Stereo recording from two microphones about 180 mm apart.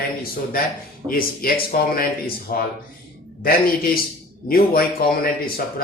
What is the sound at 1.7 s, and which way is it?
Speech, 55° left (ahead or behind).